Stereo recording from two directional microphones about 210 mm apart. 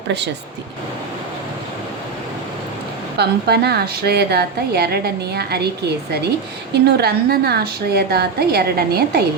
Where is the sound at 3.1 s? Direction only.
50° right (ahead or behind).